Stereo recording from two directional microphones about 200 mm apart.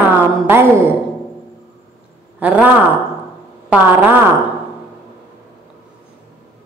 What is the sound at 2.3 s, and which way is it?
Speech, 5° right (ahead or behind).